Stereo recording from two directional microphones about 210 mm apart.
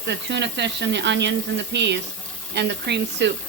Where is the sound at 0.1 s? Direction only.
55° right (ahead or behind).